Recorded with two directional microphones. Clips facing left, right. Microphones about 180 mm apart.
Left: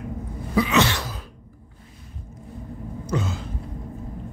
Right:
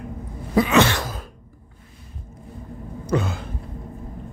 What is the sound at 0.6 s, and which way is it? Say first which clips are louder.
Cough: right 3 dB; 50° right (ahead or behind).